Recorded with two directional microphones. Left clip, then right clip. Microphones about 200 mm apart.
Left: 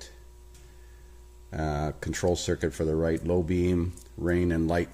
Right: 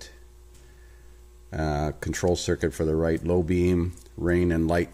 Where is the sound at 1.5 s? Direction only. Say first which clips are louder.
Right 3 dB; 25° right (ahead or behind).